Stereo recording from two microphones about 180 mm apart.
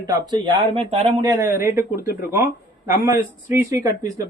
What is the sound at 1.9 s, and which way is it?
Speech, 55° left (ahead or behind).